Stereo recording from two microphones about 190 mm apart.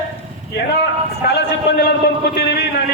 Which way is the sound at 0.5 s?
60° left (ahead or behind).